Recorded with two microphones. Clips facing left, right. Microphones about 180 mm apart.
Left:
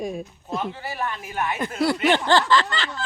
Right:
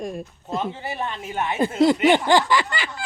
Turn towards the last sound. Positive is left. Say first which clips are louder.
# left 1 dB
turn(degrees=-10)  # may be behind; listen again after turning